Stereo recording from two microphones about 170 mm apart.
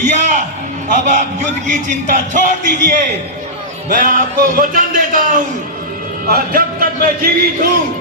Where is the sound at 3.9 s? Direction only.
50° right (ahead or behind).